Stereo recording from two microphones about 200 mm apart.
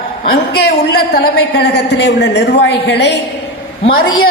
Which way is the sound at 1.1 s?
55° left (ahead or behind).